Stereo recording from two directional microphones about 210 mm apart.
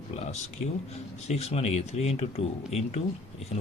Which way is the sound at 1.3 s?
30° left (ahead or behind).